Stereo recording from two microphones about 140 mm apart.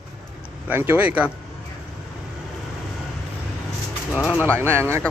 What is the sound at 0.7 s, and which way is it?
Speech, 15° right (ahead or behind).